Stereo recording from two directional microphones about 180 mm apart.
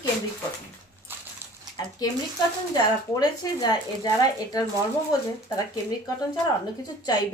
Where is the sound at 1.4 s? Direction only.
15° right (ahead or behind).